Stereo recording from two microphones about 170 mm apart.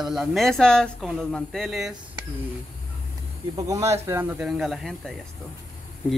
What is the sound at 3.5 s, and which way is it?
Speech, 20° right (ahead or behind).